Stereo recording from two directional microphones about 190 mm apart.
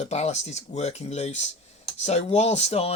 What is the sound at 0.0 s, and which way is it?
Speech, 35° left (ahead or behind).